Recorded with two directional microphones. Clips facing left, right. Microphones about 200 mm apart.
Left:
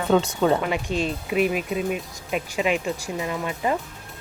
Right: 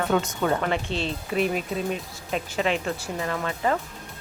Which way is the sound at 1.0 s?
5° left (ahead or behind).